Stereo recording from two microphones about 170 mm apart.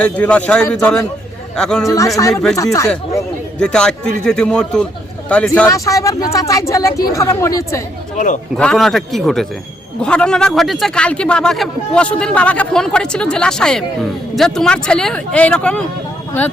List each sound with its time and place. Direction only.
0.0 s a woman's voice: 5° left (ahead or behind)
1.8 s speech: 20° left (ahead or behind)
2.3 s a man's voice: 5° left (ahead or behind)
3.6 s a man's voice: 5° left (ahead or behind)
5.6 s a woman's voice: 20° left (ahead or behind)
8.1 s a man's voice: 45° left (ahead or behind)
8.5 s a man's voice: 5° left (ahead or behind)